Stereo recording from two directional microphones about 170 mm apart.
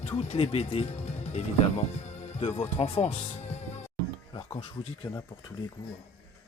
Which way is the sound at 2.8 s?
40° left (ahead or behind).